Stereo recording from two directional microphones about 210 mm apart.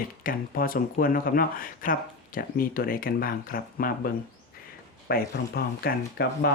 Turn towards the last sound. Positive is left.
turn(degrees=45)  # may be behind; listen again after turning